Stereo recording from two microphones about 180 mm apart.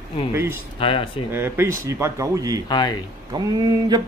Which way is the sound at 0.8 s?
30° left (ahead or behind).